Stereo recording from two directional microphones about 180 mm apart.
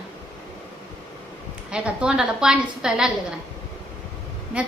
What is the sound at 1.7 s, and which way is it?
A woman's voice, 5° right (ahead or behind).